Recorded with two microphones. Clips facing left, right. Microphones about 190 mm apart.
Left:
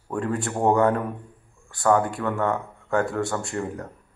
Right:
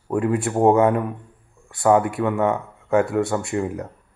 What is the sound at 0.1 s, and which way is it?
Speech, 5° right (ahead or behind).